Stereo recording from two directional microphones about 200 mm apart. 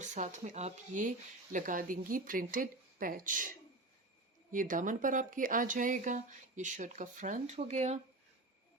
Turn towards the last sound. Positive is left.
turn(degrees=-35)  # may be behind; listen again after turning